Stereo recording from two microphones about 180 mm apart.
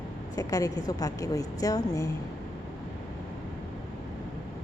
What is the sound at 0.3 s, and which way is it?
A woman's voice, 20° left (ahead or behind).